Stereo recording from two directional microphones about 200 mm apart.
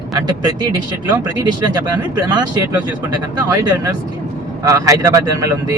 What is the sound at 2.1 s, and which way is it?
Speech, 20° right (ahead or behind).